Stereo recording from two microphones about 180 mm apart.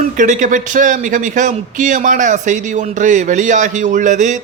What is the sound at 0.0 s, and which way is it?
A man's voice, 45° right (ahead or behind).